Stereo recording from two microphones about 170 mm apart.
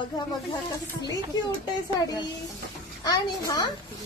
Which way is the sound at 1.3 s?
25° left (ahead or behind).